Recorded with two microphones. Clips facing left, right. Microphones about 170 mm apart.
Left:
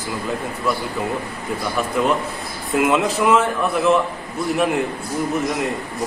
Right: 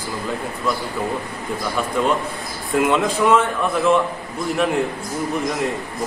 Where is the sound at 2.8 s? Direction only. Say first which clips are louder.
Even; 5° left (ahead or behind).